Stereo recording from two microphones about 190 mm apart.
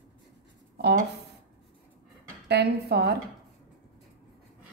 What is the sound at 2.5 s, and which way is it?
Speech, 60° right (ahead or behind).